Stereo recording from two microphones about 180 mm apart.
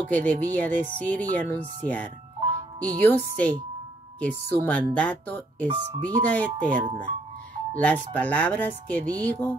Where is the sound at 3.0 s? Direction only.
10° left (ahead or behind).